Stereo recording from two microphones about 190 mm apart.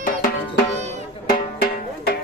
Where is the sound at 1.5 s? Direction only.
55° left (ahead or behind).